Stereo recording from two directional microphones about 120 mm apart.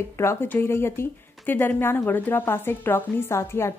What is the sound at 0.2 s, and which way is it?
Speech, 20° left (ahead or behind).